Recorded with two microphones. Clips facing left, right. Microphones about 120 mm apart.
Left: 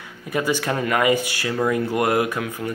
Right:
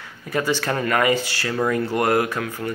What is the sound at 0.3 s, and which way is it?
Speech, 15° left (ahead or behind).